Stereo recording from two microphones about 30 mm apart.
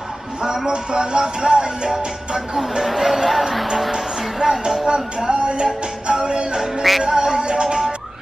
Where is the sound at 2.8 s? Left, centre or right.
Centre.